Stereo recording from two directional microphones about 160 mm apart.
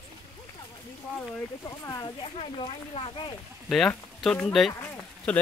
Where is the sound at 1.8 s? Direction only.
25° left (ahead or behind).